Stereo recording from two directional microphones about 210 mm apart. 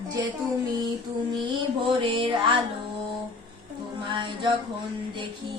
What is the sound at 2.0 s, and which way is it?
Music, 25° right (ahead or behind).